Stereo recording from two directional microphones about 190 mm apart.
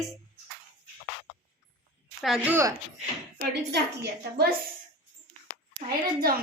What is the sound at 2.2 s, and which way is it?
Speech, 5° right (ahead or behind).